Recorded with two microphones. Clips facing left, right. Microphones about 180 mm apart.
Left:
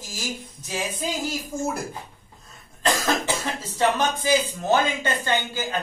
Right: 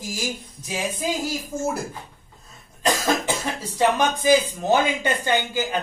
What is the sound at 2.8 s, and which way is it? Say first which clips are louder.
Speech: right 1 dB; 15° right (ahead or behind).